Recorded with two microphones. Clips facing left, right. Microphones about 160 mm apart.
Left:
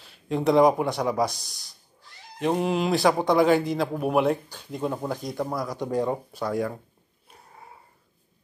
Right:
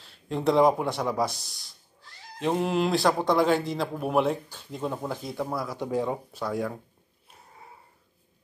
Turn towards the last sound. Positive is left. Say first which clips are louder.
# left 3 dB
turn(degrees=0)  # may be behind; listen again after turning